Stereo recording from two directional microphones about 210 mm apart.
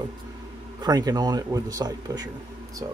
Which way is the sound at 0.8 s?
20° right (ahead or behind).